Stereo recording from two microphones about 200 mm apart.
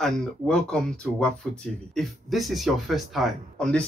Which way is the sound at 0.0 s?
5° left (ahead or behind).